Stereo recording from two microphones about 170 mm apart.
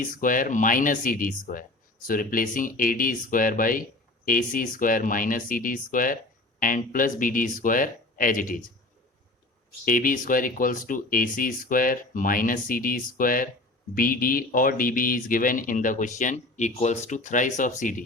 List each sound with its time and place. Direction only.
0.0 s speech: 55° left (ahead or behind)
9.8 s speech: 50° left (ahead or behind)